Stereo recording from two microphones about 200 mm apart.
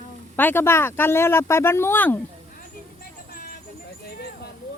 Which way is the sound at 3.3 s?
45° left (ahead or behind).